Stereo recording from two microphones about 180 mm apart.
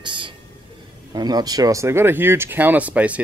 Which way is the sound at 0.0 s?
25° right (ahead or behind).